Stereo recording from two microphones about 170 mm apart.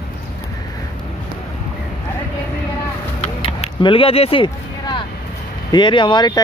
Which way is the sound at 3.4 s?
30° left (ahead or behind).